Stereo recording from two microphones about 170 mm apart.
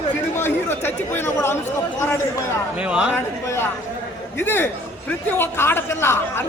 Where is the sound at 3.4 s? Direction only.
15° left (ahead or behind).